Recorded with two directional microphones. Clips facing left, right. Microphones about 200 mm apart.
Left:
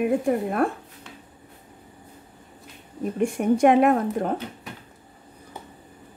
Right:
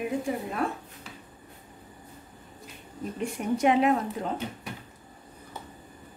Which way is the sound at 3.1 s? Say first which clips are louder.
Left 8 dB; 50° left (ahead or behind).